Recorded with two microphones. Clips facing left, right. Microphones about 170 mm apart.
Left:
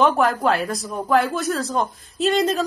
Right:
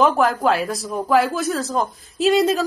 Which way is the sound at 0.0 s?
Centre (ahead or behind).